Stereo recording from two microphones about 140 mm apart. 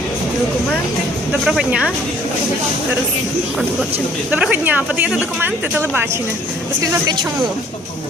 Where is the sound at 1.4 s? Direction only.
5° right (ahead or behind).